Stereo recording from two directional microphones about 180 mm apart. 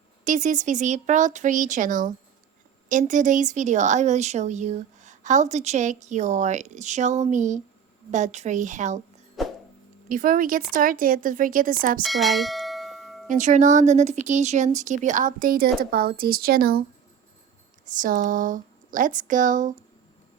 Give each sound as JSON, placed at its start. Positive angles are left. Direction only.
{"t": 0.3, "sound": "speech", "side_deg": -45}
{"t": 9.4, "sound": "a sound", "side_deg": 0}
{"t": 10.1, "sound": "speech", "side_deg": -50}
{"t": 12.0, "sound": "bell", "side_deg": 0}
{"t": 13.2, "sound": "speech", "side_deg": -45}
{"t": 17.8, "sound": "speech", "side_deg": -45}